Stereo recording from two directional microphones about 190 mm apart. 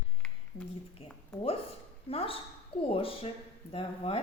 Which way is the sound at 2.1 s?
30° left (ahead or behind).